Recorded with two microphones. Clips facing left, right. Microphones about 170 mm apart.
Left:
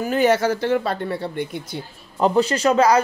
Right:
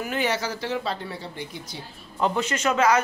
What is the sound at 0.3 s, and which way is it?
Speech, 55° left (ahead or behind).